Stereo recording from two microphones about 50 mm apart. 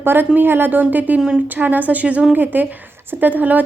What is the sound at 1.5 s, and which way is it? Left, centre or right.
Speech, right.